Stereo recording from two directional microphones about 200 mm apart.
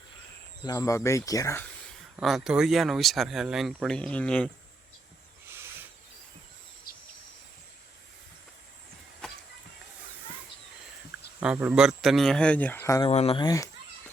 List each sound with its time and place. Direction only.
0.6 s speech: 15° left (ahead or behind)
2.1 s speech: centre (ahead or behind)
5.5 s a sound: 10° right (ahead or behind)
11.3 s speech: 10° right (ahead or behind); by 13.1 s 15° left (ahead or behind)
13.1 s speech: 30° left (ahead or behind)